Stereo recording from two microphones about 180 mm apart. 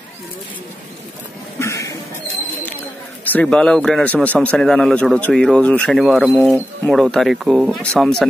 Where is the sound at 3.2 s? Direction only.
5° left (ahead or behind); by 6.6 s 10° right (ahead or behind).